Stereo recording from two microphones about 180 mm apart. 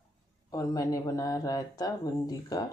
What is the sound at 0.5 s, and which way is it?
Speech, 20° left (ahead or behind).